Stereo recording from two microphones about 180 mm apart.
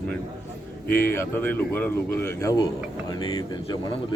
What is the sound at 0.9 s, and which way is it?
A man's voice, 10° left (ahead or behind).